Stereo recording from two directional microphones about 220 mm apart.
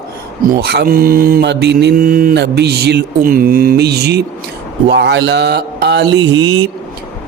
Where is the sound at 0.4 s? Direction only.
45° right (ahead or behind).